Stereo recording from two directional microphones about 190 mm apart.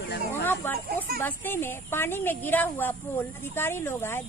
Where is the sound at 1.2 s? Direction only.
10° left (ahead or behind).